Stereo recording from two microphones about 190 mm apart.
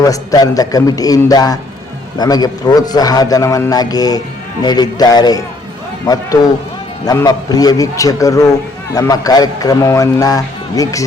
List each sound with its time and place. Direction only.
0.0 s a man's voice: 20° left (ahead or behind)
7.0 s a man's voice: 20° left (ahead or behind)